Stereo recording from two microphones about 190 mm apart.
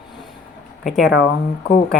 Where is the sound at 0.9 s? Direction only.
Centre (ahead or behind).